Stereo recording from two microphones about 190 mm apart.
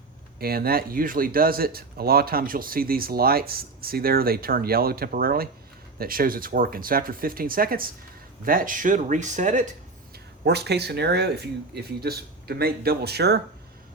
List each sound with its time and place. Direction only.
0.3 s speech: 50° right (ahead or behind)
10.4 s speech: 60° right (ahead or behind)